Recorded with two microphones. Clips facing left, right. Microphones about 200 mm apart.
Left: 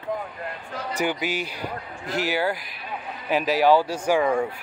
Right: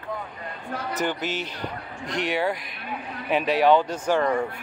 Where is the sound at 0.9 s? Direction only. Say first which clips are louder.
Left 2 dB; 10° left (ahead or behind).